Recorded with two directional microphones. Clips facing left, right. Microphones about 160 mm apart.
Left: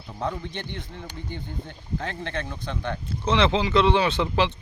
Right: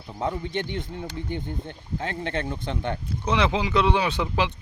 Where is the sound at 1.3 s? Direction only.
55° right (ahead or behind).